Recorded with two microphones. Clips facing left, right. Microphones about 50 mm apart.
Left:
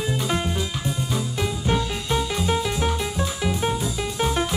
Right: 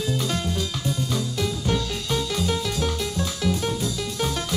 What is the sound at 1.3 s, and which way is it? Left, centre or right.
Music, left.